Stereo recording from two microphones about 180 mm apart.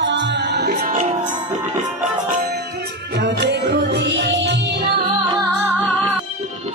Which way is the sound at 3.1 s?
70° right (ahead or behind).